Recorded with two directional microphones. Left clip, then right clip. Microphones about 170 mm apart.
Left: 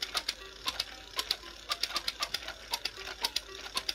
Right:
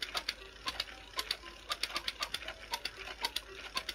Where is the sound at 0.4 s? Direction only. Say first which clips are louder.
Left 4 dB; 15° left (ahead or behind).